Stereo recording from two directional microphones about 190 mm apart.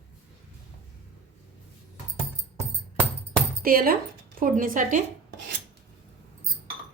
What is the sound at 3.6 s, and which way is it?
A woman's voice, 50° right (ahead or behind).